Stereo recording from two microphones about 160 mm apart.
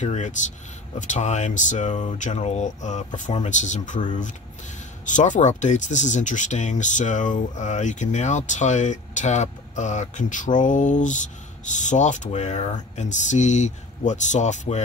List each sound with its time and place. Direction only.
0.0 s speech: 45° left (ahead or behind)
5.0 s speech: 50° left (ahead or behind)